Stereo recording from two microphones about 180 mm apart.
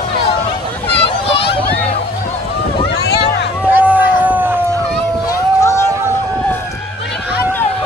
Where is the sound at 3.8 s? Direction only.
10° right (ahead or behind).